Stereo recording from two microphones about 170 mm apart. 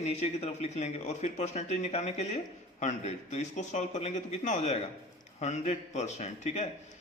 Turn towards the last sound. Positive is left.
turn(degrees=40)  # may be behind; listen again after turning